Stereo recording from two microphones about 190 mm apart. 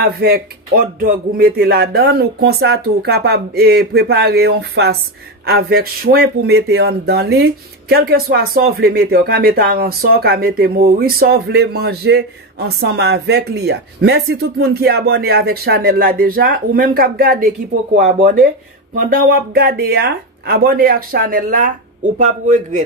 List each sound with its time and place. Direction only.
0.0 s speech: 55° right (ahead or behind)